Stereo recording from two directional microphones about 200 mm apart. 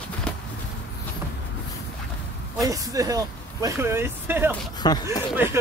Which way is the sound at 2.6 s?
15° right (ahead or behind).